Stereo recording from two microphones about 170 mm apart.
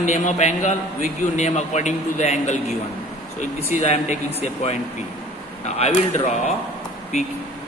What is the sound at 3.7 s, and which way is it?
Speech, 45° left (ahead or behind).